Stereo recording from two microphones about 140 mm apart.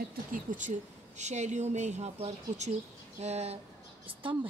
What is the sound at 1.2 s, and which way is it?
Speech, 55° right (ahead or behind).